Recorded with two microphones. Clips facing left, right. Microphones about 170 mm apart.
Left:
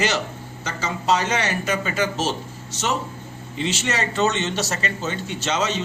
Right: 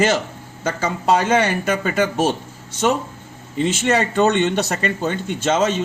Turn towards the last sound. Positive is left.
turn(degrees=-50)  # may be behind; listen again after turning